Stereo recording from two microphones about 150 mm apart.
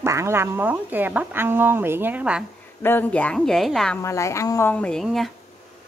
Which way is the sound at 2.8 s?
10° left (ahead or behind).